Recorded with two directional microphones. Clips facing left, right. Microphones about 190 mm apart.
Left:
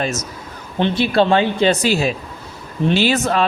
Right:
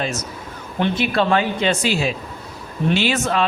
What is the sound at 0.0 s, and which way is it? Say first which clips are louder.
Speech: left 2 dB; 40° left (ahead or behind).